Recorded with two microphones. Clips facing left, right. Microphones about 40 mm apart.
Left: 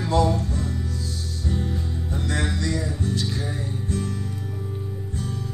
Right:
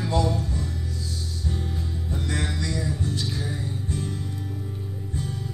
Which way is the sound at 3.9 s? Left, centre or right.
Centre.